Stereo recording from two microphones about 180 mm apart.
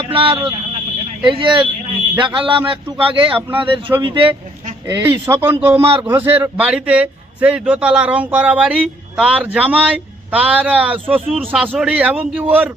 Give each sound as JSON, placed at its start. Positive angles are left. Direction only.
{"t": 0.0, "sound": "a man's voice", "side_deg": -30}